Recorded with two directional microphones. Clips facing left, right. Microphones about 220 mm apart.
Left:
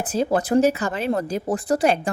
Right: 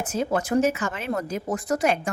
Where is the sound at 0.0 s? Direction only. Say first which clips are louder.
Left 4 dB; 35° left (ahead or behind).